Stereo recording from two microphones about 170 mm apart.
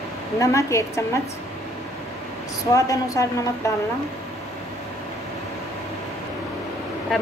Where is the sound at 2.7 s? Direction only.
20° left (ahead or behind).